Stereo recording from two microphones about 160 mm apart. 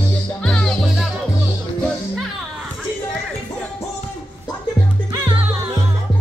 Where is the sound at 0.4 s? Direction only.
5° left (ahead or behind).